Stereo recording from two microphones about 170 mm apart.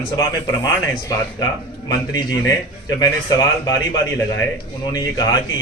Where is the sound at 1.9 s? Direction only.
20° left (ahead or behind).